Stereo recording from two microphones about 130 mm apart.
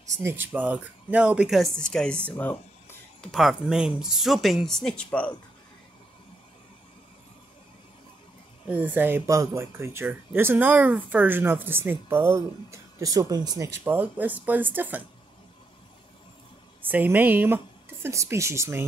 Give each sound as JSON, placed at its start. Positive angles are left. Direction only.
{"t": 0.2, "sound": "speech", "side_deg": -15}
{"t": 3.3, "sound": "speech", "side_deg": 0}
{"t": 8.6, "sound": "speech", "side_deg": -15}
{"t": 16.8, "sound": "speech", "side_deg": -15}